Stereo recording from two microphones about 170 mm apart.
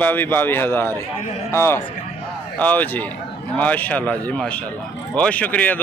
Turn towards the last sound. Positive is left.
turn(degrees=10)  # may be behind; listen again after turning